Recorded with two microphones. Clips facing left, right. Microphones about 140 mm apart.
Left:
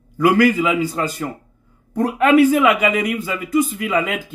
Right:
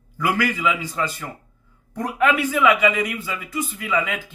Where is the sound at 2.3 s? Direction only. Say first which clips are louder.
Left 8 dB; 45° left (ahead or behind).